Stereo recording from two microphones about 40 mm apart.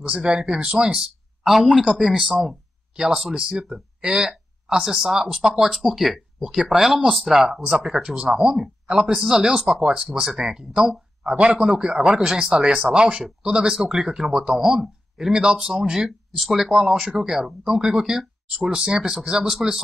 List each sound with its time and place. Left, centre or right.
0.1 s speech: centre
0.9 s a sound: centre
1.8 s speech: centre
6.4 s speech: centre
11.5 s speech: centre